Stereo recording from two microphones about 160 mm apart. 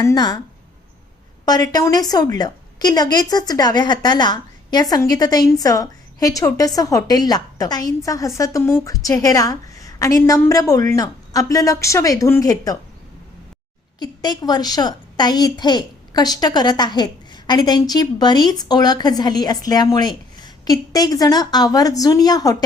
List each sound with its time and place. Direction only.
0.0 s a woman's voice: 20° left (ahead or behind)
1.7 s a woman's voice: 25° left (ahead or behind)
14.0 s a woman's voice: 25° left (ahead or behind)